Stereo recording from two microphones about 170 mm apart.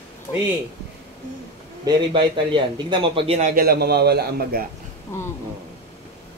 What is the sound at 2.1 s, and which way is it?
A man's voice, 30° right (ahead or behind).